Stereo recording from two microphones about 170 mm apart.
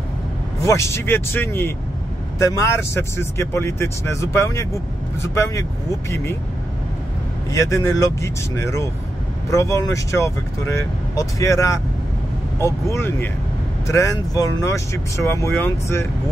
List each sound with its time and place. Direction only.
0.6 s speech: 15° left (ahead or behind)
7.5 s speech: 20° left (ahead or behind)